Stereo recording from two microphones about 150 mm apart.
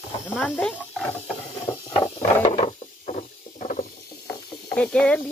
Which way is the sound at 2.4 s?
40° left (ahead or behind).